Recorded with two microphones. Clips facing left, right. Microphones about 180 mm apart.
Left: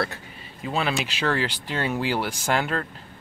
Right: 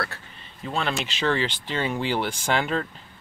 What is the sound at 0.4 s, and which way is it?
Speech, 5° left (ahead or behind).